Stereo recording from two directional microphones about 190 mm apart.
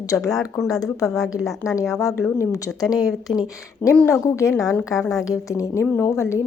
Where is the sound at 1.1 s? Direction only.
Centre (ahead or behind).